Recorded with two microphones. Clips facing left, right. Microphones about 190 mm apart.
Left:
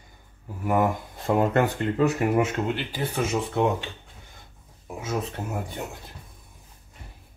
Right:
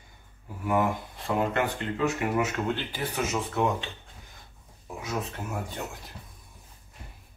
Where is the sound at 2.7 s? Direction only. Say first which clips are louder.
Left 2 dB; 15° left (ahead or behind).